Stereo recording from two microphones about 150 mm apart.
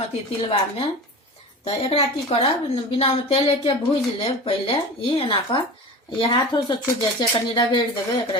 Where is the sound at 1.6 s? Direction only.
40° left (ahead or behind).